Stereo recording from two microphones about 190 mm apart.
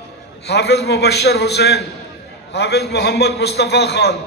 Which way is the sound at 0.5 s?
60° left (ahead or behind).